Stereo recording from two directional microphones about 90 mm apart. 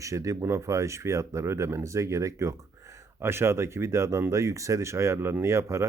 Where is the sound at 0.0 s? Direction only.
35° right (ahead or behind).